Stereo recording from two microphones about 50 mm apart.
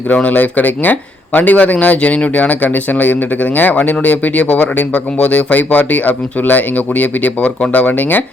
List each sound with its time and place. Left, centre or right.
0.3 s speech: left
3.6 s speech: left
7.7 s speech: left